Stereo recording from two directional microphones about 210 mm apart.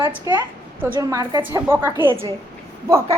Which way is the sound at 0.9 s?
15° right (ahead or behind).